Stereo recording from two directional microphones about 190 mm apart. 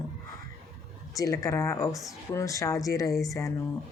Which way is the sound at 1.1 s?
15° left (ahead or behind).